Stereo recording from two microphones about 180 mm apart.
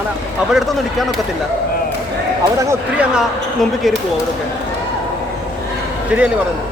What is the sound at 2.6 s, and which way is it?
Speech, 15° right (ahead or behind).